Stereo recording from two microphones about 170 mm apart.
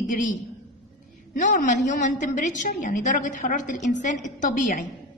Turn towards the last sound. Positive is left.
turn(degrees=55)  # may be behind; listen again after turning